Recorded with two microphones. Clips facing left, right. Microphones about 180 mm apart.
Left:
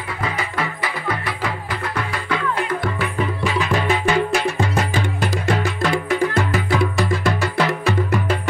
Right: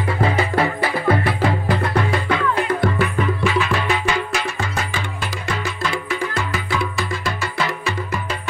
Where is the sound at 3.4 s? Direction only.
40° left (ahead or behind).